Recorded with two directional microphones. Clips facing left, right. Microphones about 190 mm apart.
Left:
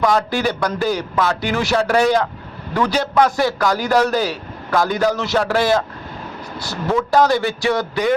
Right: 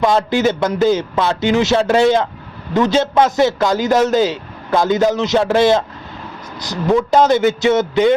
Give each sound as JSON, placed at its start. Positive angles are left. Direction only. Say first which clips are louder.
{"t": 0.0, "sound": "a man's voice", "louder": "right 3 dB", "side_deg": -25}